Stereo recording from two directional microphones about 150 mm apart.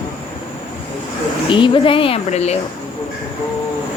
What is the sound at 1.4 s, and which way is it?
A woman's voice, 35° left (ahead or behind).